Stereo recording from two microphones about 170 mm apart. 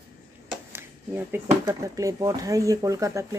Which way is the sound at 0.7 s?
15° right (ahead or behind).